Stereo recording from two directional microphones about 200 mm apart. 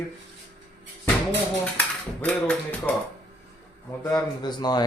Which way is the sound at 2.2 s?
5° left (ahead or behind).